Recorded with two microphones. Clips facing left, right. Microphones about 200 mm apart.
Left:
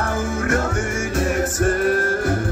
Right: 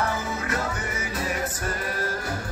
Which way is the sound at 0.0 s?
50° left (ahead or behind).